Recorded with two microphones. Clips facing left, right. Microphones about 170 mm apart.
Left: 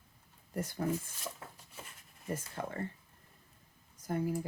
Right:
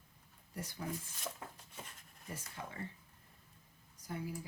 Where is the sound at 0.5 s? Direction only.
50° left (ahead or behind).